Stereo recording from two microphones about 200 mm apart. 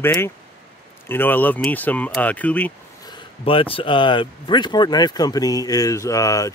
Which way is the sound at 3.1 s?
25° left (ahead or behind).